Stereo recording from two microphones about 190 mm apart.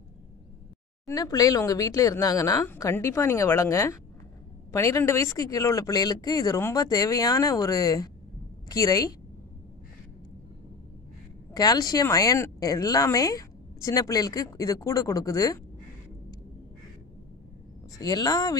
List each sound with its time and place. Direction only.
1.0 s a woman's voice: 20° left (ahead or behind)
11.5 s speech: 20° left (ahead or behind)
17.9 s a woman's voice: 20° left (ahead or behind)